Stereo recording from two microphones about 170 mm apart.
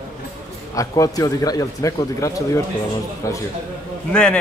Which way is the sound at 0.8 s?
20° left (ahead or behind).